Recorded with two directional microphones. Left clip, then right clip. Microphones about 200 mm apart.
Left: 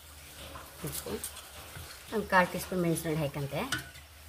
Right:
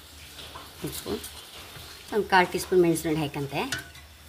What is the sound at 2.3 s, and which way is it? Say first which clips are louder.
Speech: right 5 dB; 50° right (ahead or behind).